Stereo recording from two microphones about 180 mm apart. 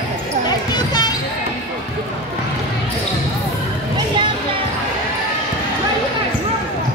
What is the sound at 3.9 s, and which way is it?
Music, 25° right (ahead or behind).